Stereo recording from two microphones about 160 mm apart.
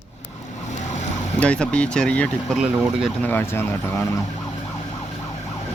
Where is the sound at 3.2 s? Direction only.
15° left (ahead or behind).